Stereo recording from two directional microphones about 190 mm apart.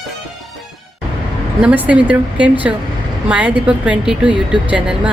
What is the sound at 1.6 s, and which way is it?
A woman's voice, 5° right (ahead or behind).